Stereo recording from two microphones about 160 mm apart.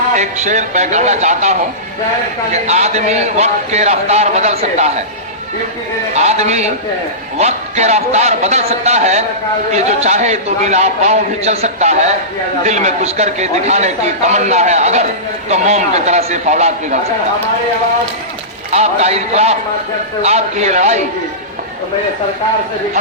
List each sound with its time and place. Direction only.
0.2 s a man's voice: 45° right (ahead or behind)
6.1 s a man's voice: 45° right (ahead or behind)
18.7 s a man's voice: 40° right (ahead or behind)